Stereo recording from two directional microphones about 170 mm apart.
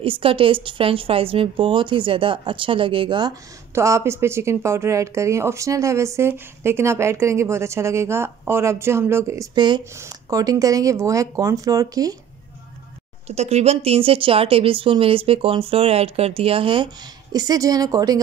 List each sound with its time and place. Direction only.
0.0 s speech: 30° right (ahead or behind)
3.7 s speech: 15° right (ahead or behind)
13.3 s speech: 40° right (ahead or behind); by 18.2 s 20° right (ahead or behind)